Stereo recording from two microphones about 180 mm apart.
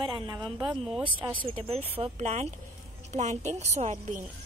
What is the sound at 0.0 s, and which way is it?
A woman's voice, 25° right (ahead or behind).